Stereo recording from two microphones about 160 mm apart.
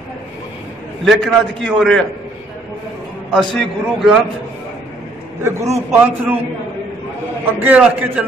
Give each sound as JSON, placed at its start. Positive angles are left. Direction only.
{"t": 1.0, "sound": "a man's voice", "side_deg": 0}
{"t": 3.4, "sound": "a man's voice", "side_deg": 0}
{"t": 5.4, "sound": "a man's voice", "side_deg": -15}
{"t": 7.6, "sound": "a man's voice", "side_deg": -10}